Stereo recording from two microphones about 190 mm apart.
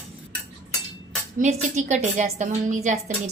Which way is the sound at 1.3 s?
40° right (ahead or behind).